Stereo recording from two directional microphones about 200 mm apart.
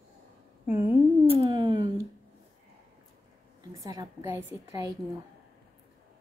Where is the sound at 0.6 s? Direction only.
10° right (ahead or behind).